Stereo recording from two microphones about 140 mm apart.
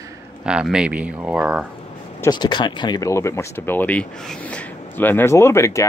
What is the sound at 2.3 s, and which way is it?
Speech, 30° left (ahead or behind).